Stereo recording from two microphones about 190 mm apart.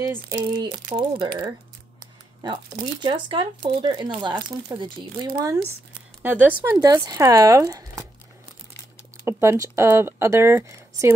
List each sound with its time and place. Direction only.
0.0 s speech: 15° right (ahead or behind)
3.0 s speech: 25° right (ahead or behind)
6.6 s speech: 15° right (ahead or behind)
9.2 s speech: 15° right (ahead or behind)